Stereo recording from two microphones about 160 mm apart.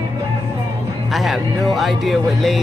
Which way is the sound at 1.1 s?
Centre (ahead or behind).